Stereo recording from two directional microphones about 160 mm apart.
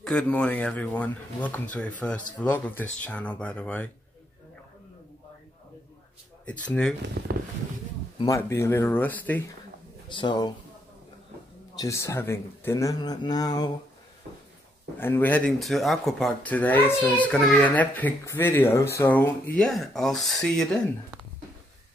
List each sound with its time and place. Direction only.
0.0 s speech: 5° left (ahead or behind)
6.4 s speech: 10° left (ahead or behind)
8.2 s speech: 20° left (ahead or behind)
10.1 s speech: 30° left (ahead or behind)
11.7 s speech: 20° left (ahead or behind)
15.0 s speech: 15° left (ahead or behind)